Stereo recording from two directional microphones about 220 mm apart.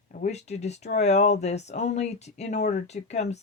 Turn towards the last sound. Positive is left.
turn(degrees=30)  # may be behind; listen again after turning